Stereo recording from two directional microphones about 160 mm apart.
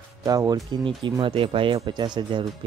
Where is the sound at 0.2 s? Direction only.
20° right (ahead or behind).